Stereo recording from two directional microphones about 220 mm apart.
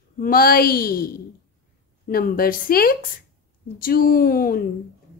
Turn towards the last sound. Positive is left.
turn(degrees=40)  # may be behind; listen again after turning